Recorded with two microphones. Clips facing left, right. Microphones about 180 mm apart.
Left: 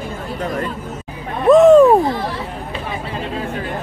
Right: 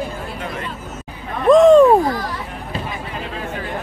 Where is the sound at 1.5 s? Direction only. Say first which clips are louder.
Left 1 dB; 5° left (ahead or behind).